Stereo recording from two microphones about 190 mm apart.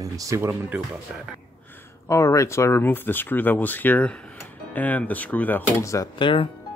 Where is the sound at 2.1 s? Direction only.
15° left (ahead or behind).